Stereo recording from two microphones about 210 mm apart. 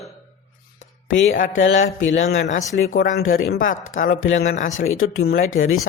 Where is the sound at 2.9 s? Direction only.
45° left (ahead or behind).